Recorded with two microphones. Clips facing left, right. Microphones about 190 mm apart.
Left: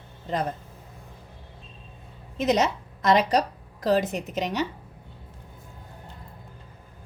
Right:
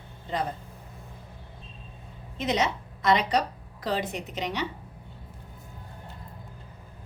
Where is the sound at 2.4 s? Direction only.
40° left (ahead or behind).